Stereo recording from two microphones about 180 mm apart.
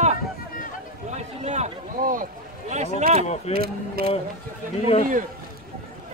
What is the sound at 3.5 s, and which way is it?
Speech, 60° right (ahead or behind).